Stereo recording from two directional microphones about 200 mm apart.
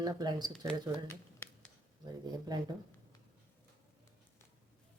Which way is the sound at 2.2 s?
20° right (ahead or behind).